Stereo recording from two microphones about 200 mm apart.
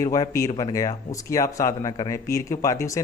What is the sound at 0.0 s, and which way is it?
Speech, 15° left (ahead or behind).